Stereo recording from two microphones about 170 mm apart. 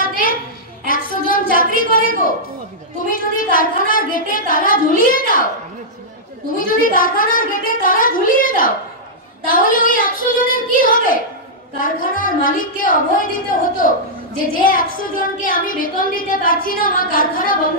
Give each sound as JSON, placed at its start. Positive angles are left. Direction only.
{"t": 0.0, "sound": "a sound", "side_deg": 55}
{"t": 3.1, "sound": "a woman's voice", "side_deg": 55}
{"t": 6.6, "sound": "a woman's voice", "side_deg": 55}